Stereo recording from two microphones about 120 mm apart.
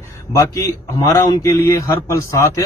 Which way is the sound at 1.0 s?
25° left (ahead or behind).